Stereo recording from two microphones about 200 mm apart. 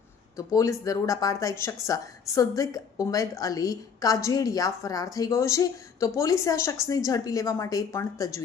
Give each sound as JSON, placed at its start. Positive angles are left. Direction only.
{"t": 0.3, "sound": "a woman's voice", "side_deg": 15}